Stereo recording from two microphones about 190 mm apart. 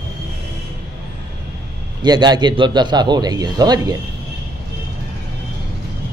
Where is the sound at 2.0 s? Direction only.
20° right (ahead or behind).